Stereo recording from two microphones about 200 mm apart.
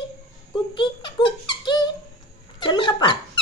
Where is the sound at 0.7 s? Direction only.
25° left (ahead or behind).